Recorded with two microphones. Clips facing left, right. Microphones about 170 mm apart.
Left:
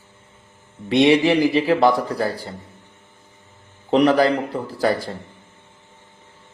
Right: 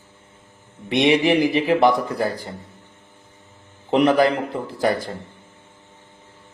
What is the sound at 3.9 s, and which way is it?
Speech, 20° right (ahead or behind).